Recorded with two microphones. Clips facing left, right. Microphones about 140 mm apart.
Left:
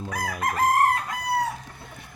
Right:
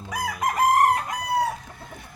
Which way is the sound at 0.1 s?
20° right (ahead or behind).